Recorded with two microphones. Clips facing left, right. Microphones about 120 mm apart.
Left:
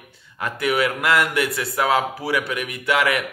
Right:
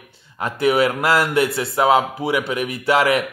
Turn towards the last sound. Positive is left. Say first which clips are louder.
# right 4 dB
turn(degrees=-30)  # may be behind; listen again after turning